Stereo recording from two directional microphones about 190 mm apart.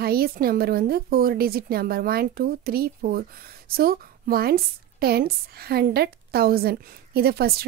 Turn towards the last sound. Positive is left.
turn(degrees=-55)  # may be behind; listen again after turning